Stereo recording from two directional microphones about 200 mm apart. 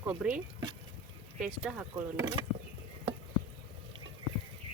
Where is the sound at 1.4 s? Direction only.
5° right (ahead or behind).